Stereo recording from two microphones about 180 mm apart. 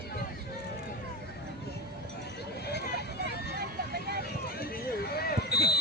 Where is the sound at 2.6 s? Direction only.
65° left (ahead or behind).